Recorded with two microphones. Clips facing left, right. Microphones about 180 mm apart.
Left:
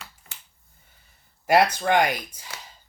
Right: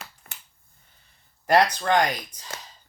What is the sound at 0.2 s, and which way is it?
Finger snapping, 55° right (ahead or behind).